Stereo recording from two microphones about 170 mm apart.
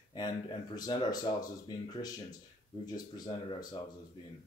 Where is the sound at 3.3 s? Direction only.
30° left (ahead or behind).